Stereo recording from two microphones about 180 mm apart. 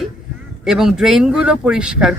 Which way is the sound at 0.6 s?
Centre (ahead or behind).